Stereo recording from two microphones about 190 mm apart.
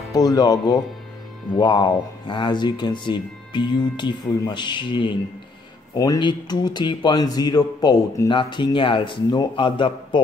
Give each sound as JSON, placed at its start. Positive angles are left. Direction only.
{"t": 0.1, "sound": "speech", "side_deg": 20}